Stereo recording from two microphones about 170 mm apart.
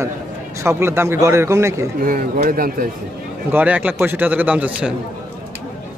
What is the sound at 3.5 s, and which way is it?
A man's voice, 10° right (ahead or behind).